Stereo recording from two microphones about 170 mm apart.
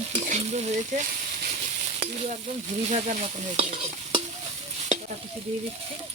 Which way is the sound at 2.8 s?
45° right (ahead or behind).